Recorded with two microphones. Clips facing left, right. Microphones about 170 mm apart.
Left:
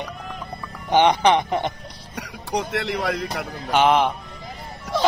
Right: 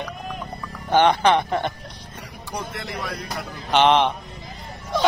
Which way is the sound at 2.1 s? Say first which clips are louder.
Left 7 dB; 90° left.